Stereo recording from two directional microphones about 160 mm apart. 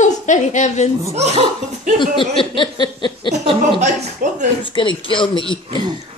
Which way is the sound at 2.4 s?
30° left (ahead or behind).